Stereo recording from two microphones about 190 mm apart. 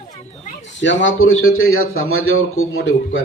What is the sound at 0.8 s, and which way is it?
A man's voice, 75° left (ahead or behind).